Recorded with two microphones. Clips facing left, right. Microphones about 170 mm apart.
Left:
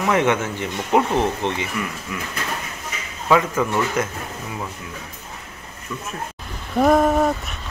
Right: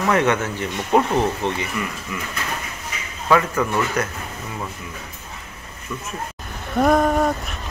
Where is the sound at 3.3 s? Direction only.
15° left (ahead or behind).